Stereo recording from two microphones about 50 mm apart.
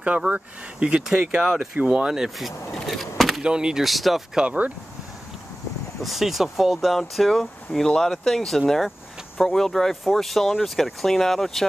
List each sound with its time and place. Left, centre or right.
0.3 s speech: right
1.1 s speech: centre
2.7 s speech: centre
3.2 s door: centre
3.4 s speech: centre
3.8 s speech: centre
4.5 s speech: right
6.0 s speech: centre